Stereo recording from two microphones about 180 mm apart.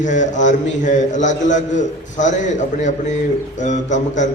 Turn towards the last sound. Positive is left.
turn(degrees=40)  # may be behind; listen again after turning